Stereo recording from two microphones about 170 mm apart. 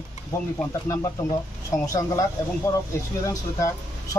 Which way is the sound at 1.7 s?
20° left (ahead or behind).